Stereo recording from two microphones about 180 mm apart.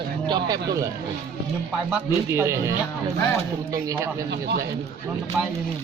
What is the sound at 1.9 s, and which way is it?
Speech, 15° right (ahead or behind).